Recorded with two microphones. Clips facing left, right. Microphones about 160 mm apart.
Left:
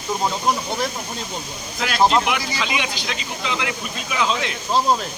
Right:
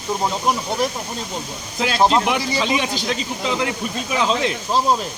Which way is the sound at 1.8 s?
25° right (ahead or behind).